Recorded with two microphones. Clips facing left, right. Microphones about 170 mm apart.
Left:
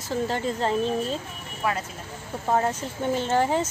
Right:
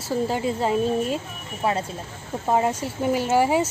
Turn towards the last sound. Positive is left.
turn(degrees=-10)  # may be behind; listen again after turning